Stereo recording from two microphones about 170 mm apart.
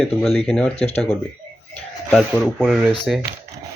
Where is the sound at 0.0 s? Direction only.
Centre (ahead or behind).